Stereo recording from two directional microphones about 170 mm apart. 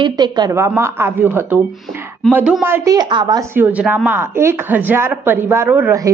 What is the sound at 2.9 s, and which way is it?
Speech, 25° right (ahead or behind).